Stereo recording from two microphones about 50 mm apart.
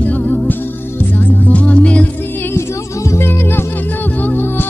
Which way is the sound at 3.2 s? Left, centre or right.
Left.